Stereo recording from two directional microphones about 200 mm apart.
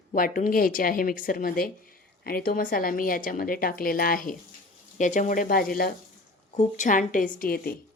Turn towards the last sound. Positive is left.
turn(degrees=50)  # may be behind; listen again after turning